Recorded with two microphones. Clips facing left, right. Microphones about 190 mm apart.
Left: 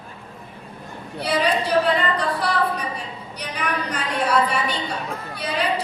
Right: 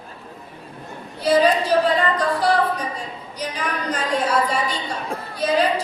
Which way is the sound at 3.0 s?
65° left (ahead or behind).